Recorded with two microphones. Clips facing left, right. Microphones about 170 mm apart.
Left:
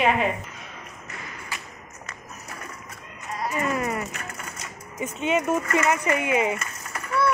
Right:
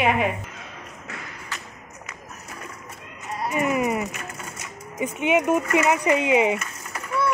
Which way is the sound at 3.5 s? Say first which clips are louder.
Right 4 dB; 15° right (ahead or behind).